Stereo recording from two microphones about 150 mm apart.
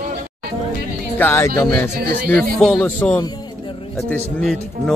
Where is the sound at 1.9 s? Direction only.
90° right.